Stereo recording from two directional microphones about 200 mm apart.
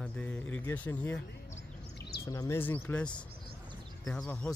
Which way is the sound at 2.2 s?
15° left (ahead or behind).